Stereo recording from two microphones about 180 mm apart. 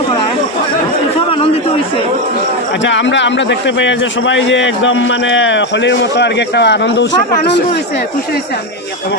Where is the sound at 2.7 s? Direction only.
90° left.